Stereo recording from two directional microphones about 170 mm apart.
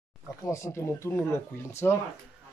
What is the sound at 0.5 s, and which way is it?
Speech, 15° left (ahead or behind).